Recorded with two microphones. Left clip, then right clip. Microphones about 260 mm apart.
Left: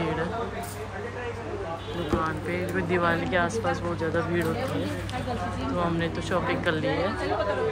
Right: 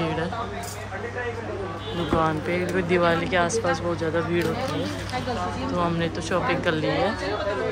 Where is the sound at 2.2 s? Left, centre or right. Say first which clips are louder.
Right 5 dB; centre.